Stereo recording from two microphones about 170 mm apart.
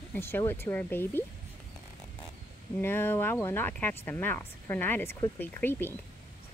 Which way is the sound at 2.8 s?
10° left (ahead or behind).